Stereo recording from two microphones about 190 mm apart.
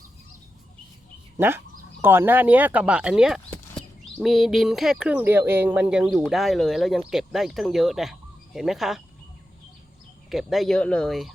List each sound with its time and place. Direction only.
1.4 s speech: 10° right (ahead or behind)
10.2 s speech: centre (ahead or behind)